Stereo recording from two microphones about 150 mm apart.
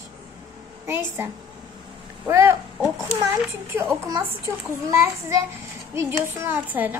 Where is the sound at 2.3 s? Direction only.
20° right (ahead or behind).